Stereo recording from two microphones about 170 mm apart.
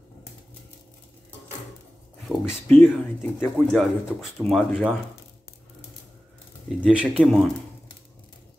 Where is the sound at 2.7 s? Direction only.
Centre (ahead or behind).